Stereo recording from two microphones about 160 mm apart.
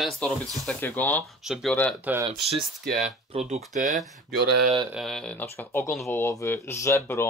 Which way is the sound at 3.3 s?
40° right (ahead or behind).